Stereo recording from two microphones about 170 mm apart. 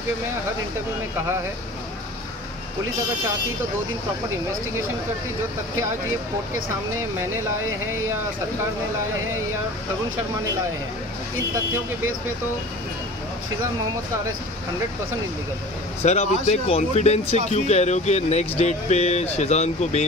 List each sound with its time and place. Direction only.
16.0 s speech: 40° left (ahead or behind)